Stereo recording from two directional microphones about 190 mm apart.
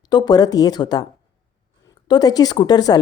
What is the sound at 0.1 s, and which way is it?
Speech, 20° left (ahead or behind).